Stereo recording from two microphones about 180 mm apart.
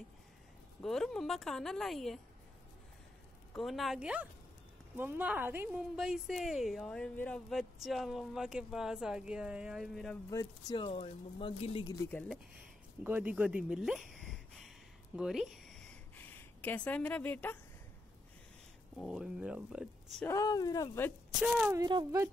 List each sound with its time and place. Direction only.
0.8 s a woman's voice: centre (ahead or behind)
3.5 s a woman's voice: centre (ahead or behind)
10.3 s speech: 20° left (ahead or behind)
12.0 s speech: 10° left (ahead or behind)
13.0 s a woman's voice: 10° right (ahead or behind)
16.2 s speech: 10° left (ahead or behind)
18.9 s a woman's voice: 5° right (ahead or behind)
20.2 s speech: 20° left (ahead or behind)
21.4 s a woman's voice: 5° right (ahead or behind)
21.7 s speech: 20° right (ahead or behind)